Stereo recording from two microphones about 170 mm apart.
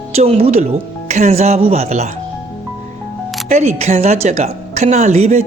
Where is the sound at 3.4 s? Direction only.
40° right (ahead or behind).